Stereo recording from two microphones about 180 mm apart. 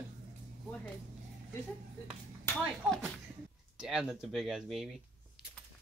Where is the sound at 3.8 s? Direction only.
5° right (ahead or behind).